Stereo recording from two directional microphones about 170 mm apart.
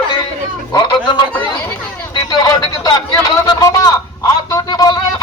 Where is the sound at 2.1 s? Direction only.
25° left (ahead or behind).